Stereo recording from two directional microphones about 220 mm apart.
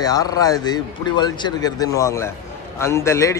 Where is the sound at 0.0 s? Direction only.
15° left (ahead or behind).